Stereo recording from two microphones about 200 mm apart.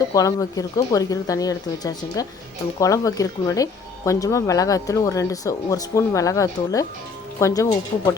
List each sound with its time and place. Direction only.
0.1 s speech: 15° left (ahead or behind)